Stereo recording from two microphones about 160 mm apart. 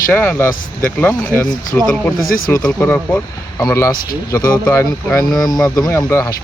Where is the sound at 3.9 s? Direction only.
65° left (ahead or behind).